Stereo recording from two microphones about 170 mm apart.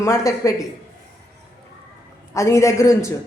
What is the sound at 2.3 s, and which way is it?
Speech, 15° left (ahead or behind).